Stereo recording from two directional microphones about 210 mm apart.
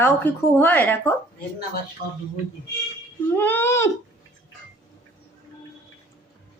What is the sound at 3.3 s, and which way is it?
Speech, 10° left (ahead or behind).